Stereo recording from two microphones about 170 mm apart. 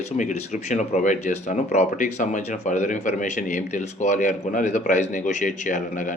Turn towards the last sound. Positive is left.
turn(degrees=50)  # may be behind; listen again after turning